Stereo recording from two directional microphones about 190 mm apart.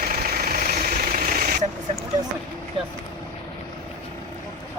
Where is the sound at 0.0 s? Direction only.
50° right (ahead or behind).